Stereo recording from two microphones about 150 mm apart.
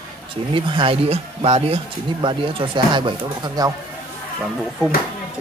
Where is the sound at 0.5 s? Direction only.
35° right (ahead or behind).